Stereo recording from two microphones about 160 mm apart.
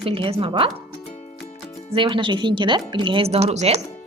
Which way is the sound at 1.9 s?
30° right (ahead or behind).